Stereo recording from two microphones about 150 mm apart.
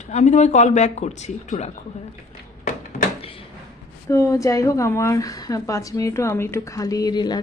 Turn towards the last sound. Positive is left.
turn(degrees=30)  # may be behind; listen again after turning